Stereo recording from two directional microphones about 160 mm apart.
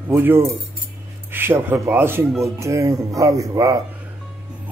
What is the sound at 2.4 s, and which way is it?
Speech, 20° right (ahead or behind).